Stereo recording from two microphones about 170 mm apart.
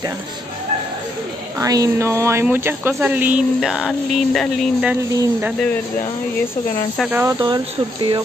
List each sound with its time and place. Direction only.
1.6 s speech: 20° right (ahead or behind); by 4.9 s centre (ahead or behind)
5.1 s speech: 20° right (ahead or behind)
7.0 s speech: 10° right (ahead or behind)
7.3 s speech: 25° right (ahead or behind)